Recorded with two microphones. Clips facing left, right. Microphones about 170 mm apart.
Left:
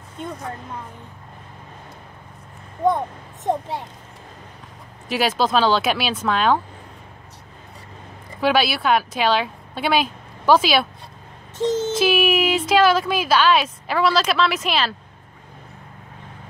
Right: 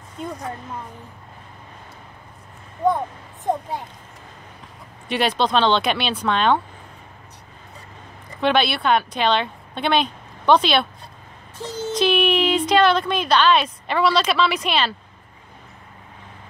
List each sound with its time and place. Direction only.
0.2 s a woman's voice: centre (ahead or behind)
5.0 s a woman's voice: 5° left (ahead or behind)
8.4 s a woman's voice: 5° left (ahead or behind)
11.5 s a sound: 25° left (ahead or behind)
11.9 s a woman's voice: 5° left (ahead or behind)